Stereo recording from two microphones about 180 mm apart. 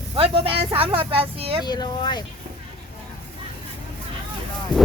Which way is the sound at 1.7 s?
25° left (ahead or behind).